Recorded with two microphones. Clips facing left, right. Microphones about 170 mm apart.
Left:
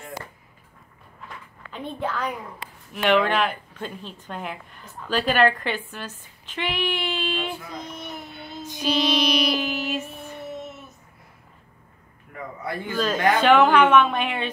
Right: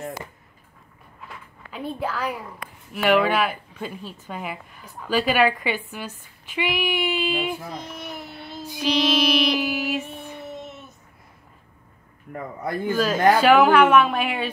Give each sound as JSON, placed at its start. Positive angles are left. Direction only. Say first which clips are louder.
{"t": 1.7, "sound": "a woman's voice", "louder": "right 1 dB", "side_deg": -5}
{"t": 7.9, "sound": "child singing", "louder": "right 1 dB", "side_deg": 0}
{"t": 12.3, "sound": "a man's voice", "louder": "right 3 dB", "side_deg": -45}
{"t": 12.9, "sound": "a woman's voice", "louder": "right 3 dB", "side_deg": -5}